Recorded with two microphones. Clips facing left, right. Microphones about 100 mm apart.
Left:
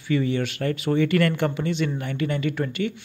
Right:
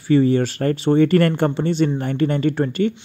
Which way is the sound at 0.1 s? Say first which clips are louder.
Right 8 dB; 35° right (ahead or behind).